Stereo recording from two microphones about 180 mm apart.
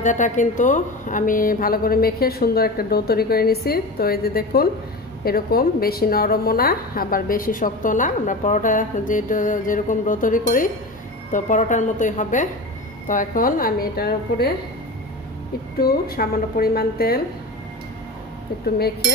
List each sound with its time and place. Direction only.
0.0 s a woman's voice: 45° left (ahead or behind)
15.8 s speech: 55° left (ahead or behind)